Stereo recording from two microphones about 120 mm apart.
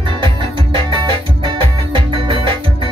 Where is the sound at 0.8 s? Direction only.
45° right (ahead or behind).